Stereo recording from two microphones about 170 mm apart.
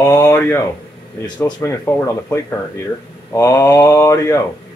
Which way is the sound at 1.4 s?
15° left (ahead or behind).